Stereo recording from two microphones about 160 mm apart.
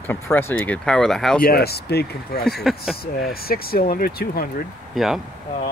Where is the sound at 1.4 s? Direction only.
75° left (ahead or behind).